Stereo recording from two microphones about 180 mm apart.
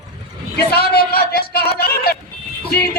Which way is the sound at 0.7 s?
60° left (ahead or behind).